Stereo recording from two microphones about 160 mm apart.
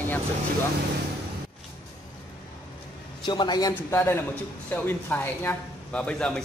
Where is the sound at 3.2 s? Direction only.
30° left (ahead or behind).